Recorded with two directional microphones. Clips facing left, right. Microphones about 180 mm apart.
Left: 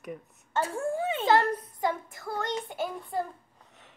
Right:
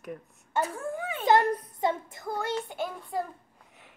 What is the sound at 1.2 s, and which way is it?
A child's voice, 20° right (ahead or behind).